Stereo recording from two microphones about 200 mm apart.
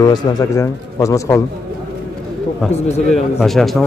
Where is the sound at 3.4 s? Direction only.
Centre (ahead or behind).